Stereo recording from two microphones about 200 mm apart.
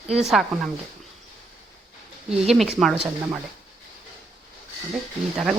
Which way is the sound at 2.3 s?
5° right (ahead or behind).